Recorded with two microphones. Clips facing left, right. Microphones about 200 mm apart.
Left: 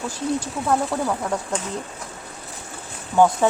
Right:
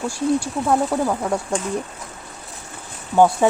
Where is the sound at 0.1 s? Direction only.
10° right (ahead or behind).